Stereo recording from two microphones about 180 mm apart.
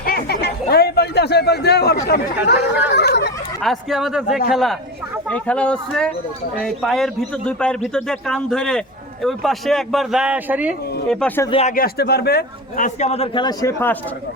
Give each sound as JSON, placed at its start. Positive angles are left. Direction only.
{"t": 0.0, "sound": "a sound", "side_deg": 55}
{"t": 2.0, "sound": "speech", "side_deg": 60}
{"t": 3.6, "sound": "a man's voice", "side_deg": 0}
{"t": 11.1, "sound": "a man's voice", "side_deg": 5}
{"t": 11.7, "sound": "a man's voice", "side_deg": 55}